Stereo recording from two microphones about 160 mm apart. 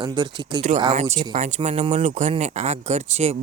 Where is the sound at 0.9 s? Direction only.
45° right (ahead or behind).